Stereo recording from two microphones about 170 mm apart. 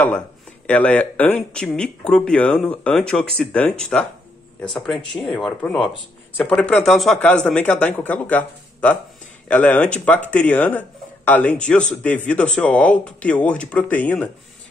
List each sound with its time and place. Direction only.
0.0 s speech: 10° left (ahead or behind)